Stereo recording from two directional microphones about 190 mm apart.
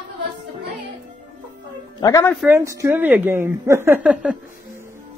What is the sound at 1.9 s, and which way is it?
Speech, 20° left (ahead or behind).